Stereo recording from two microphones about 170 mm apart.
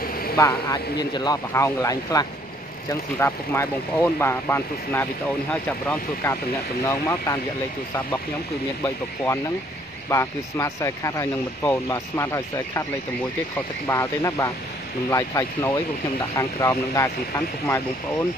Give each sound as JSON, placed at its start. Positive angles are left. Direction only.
{"t": 0.0, "sound": "a sound", "side_deg": 60}
{"t": 0.4, "sound": "speech", "side_deg": 20}
{"t": 8.8, "sound": "speech", "side_deg": 15}
{"t": 13.8, "sound": "speech", "side_deg": 20}